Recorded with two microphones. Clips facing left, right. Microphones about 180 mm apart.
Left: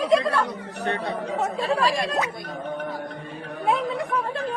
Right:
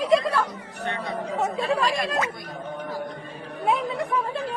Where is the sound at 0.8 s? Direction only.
35° left (ahead or behind).